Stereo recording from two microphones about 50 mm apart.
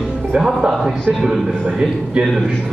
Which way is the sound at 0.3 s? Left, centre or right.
Centre.